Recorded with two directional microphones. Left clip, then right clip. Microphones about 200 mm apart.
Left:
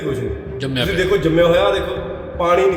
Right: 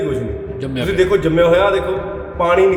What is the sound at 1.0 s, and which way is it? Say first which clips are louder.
A man's voice: right 2 dB; 15° right (ahead or behind).